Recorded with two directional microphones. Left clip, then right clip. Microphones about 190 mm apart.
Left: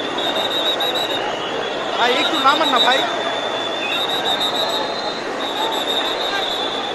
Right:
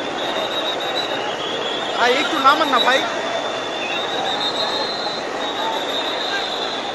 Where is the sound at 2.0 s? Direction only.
15° right (ahead or behind).